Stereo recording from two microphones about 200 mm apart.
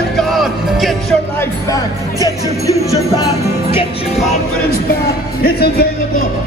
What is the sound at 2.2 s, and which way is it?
Music, 15° right (ahead or behind).